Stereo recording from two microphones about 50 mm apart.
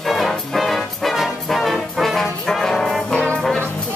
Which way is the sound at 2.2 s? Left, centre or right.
Centre.